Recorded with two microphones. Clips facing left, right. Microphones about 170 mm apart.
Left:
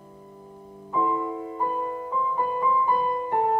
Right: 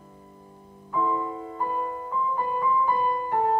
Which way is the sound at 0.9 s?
15° left (ahead or behind).